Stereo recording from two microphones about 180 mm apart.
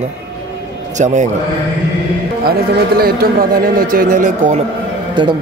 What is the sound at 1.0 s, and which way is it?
Speech, 40° right (ahead or behind).